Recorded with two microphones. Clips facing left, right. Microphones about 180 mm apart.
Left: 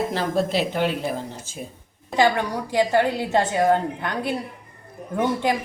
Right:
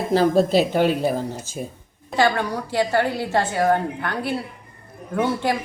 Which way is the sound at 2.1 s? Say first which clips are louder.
Even; 15° left (ahead or behind).